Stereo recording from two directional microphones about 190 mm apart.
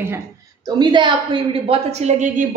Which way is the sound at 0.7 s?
25° right (ahead or behind).